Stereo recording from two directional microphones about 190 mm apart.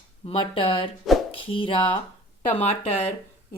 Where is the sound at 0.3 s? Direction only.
30° left (ahead or behind).